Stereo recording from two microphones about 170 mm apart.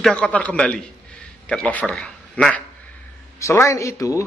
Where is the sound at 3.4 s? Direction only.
15° left (ahead or behind).